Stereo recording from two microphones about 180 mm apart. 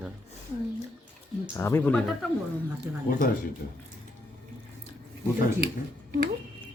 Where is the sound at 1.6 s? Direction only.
10° left (ahead or behind).